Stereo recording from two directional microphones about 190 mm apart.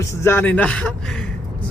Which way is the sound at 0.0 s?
15° left (ahead or behind).